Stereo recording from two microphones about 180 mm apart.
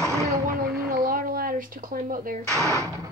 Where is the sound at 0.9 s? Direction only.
50° right (ahead or behind).